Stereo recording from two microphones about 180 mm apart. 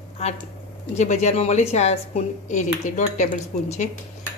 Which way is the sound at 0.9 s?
40° left (ahead or behind).